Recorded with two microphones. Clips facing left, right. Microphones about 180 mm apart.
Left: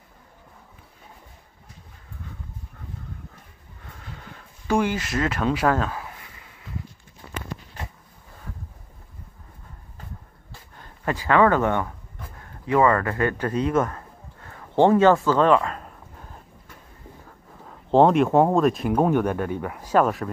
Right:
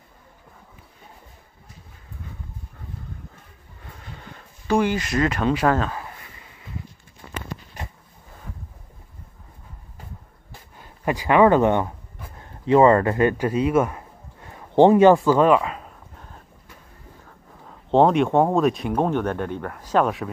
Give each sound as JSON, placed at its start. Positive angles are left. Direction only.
{"t": 4.8, "sound": "speech", "side_deg": 5}
{"t": 10.8, "sound": "speech", "side_deg": -15}
{"t": 13.5, "sound": "a sound", "side_deg": -10}
{"t": 17.9, "sound": "speech", "side_deg": 0}